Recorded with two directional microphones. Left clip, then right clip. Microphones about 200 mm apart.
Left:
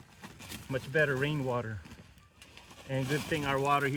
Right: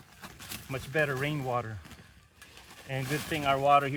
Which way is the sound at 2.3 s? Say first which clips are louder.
Right 2 dB; 25° right (ahead or behind).